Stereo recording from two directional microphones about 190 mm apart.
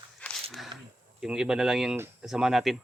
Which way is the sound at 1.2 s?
5° right (ahead or behind).